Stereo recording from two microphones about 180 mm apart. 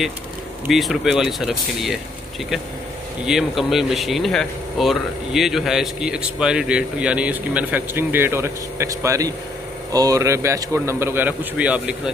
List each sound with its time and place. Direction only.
0.7 s speech: centre (ahead or behind)
3.3 s a man's voice: centre (ahead or behind)